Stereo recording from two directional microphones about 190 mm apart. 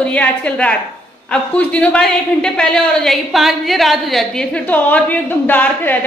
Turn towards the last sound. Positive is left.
turn(degrees=10)  # may be behind; listen again after turning